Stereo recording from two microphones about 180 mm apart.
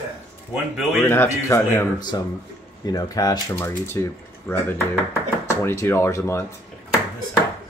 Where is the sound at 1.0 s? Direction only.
15° left (ahead or behind).